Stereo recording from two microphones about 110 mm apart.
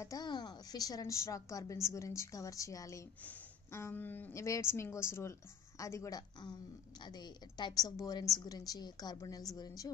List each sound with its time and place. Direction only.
0.0 s a woman's voice: 35° left (ahead or behind)